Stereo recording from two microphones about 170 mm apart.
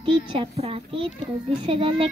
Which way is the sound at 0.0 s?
30° right (ahead or behind).